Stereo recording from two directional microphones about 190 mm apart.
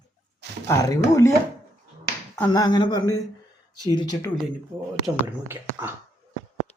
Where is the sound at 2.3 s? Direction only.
20° left (ahead or behind).